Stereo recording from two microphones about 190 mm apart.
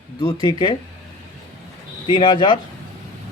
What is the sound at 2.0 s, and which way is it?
Speech, 25° left (ahead or behind).